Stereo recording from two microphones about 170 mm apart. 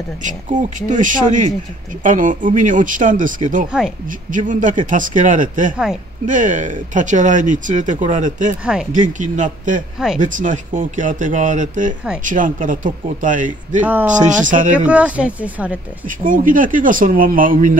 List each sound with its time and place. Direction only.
0.2 s speech: 45° right (ahead or behind)
14.9 s speech: 5° right (ahead or behind)
16.3 s speech: 50° right (ahead or behind)